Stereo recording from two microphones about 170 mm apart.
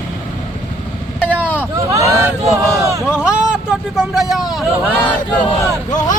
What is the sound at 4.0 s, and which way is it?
Speech, 5° right (ahead or behind).